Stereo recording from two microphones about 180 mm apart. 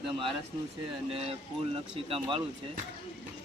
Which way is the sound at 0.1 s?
30° right (ahead or behind).